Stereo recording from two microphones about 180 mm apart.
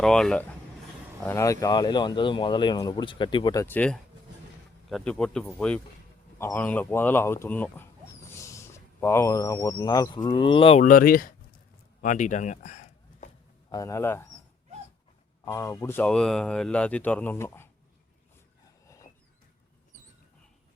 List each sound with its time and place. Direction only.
0.0 s speech: 5° left (ahead or behind)
1.2 s speech: 15° left (ahead or behind); by 10.8 s 30° left (ahead or behind)
10.8 s speech: 50° left (ahead or behind)
12.0 s a sound: 45° left (ahead or behind)
13.7 s speech: 20° left (ahead or behind)
15.4 s speech: 15° left (ahead or behind)